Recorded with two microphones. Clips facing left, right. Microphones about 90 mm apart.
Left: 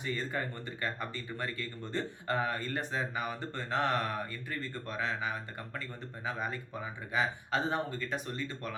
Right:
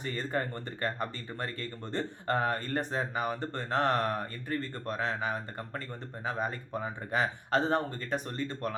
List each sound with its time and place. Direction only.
0.0 s speech: 45° right (ahead or behind)